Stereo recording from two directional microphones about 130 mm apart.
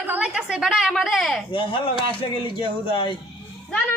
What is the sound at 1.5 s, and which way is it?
A man's voice, 40° left (ahead or behind).